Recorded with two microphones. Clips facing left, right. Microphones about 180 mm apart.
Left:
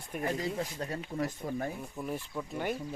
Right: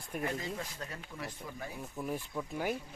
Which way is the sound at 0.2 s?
35° left (ahead or behind).